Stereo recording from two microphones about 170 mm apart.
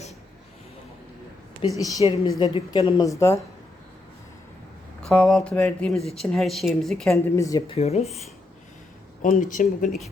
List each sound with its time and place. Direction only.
1.6 s a woman's voice: 30° left (ahead or behind); by 3.4 s 15° left (ahead or behind)
5.0 s speech: 5° left (ahead or behind)
7.3 s a woman's voice: 20° left (ahead or behind)
7.7 s speech: 40° left (ahead or behind)
9.4 s speech: 50° left (ahead or behind)